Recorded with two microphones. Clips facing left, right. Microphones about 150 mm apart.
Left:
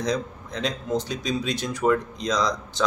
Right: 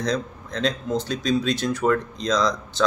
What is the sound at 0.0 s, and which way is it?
Speech, 15° left (ahead or behind).